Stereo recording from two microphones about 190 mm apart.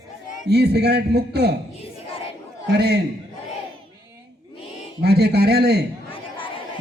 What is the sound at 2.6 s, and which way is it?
Speech, 60° right (ahead or behind).